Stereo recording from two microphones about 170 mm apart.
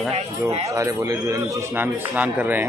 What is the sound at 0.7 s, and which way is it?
A man's voice, 20° right (ahead or behind).